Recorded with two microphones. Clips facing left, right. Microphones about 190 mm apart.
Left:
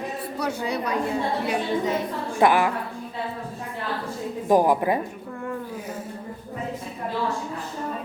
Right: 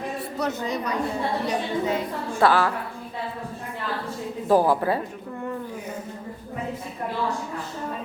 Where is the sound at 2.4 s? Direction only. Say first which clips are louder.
Left 1 dB; 15° left (ahead or behind).